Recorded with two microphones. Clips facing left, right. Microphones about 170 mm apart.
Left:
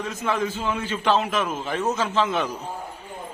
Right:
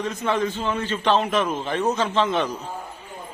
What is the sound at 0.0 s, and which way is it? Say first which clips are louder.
A man's voice: right 2 dB; 5° left (ahead or behind).